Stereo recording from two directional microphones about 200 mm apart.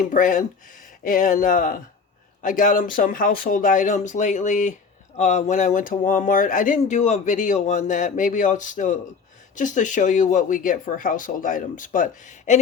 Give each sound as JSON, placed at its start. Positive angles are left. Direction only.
{"t": 0.0, "sound": "speech", "side_deg": 40}